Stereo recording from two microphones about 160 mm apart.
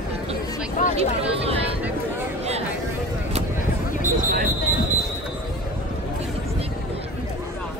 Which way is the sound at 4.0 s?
55° right (ahead or behind).